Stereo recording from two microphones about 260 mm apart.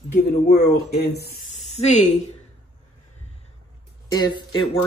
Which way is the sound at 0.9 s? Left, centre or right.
Left.